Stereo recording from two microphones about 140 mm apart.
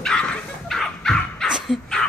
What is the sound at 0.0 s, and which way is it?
Dog, 5° left (ahead or behind).